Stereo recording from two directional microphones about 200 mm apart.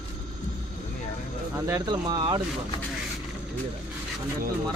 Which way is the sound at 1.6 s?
15° right (ahead or behind).